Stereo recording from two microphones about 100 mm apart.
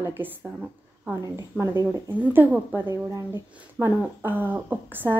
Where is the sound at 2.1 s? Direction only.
20° right (ahead or behind).